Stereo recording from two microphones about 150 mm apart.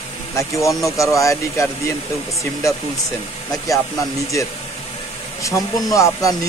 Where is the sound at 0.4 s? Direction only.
20° left (ahead or behind).